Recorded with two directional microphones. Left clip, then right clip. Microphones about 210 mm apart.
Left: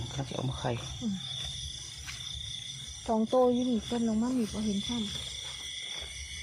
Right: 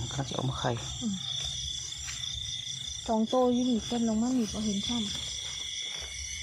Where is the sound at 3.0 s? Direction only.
15° left (ahead or behind).